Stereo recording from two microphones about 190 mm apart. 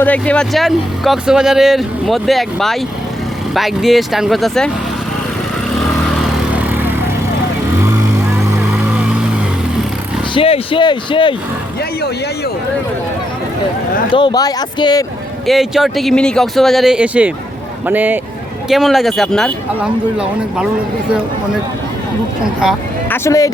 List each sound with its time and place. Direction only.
0.0 s speech: 5° left (ahead or behind)
6.5 s vehicle: 10° right (ahead or behind)
8.7 s vehicle: 5° right (ahead or behind)
10.3 s speech: 30° left (ahead or behind)
14.2 s speech: 20° left (ahead or behind)
15.4 s speech: centre (ahead or behind)
22.6 s speech: 5° right (ahead or behind)
23.0 s speech: 10° left (ahead or behind)